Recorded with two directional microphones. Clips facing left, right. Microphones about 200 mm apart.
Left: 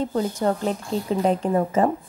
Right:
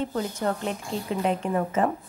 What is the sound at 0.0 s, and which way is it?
A woman's voice, 35° left (ahead or behind).